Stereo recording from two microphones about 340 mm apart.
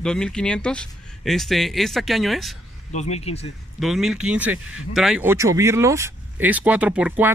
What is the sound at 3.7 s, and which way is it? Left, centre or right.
Speech, centre.